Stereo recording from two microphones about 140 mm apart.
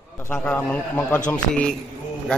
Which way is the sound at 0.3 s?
10° left (ahead or behind).